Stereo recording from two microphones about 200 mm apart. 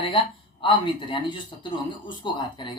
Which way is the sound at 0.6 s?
25° left (ahead or behind).